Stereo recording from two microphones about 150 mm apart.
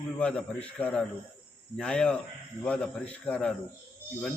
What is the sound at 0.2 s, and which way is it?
Speech, 5° left (ahead or behind).